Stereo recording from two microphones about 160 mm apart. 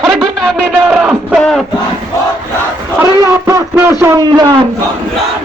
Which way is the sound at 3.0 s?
15° right (ahead or behind).